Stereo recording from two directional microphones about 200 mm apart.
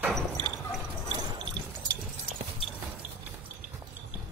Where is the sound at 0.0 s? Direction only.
Centre (ahead or behind).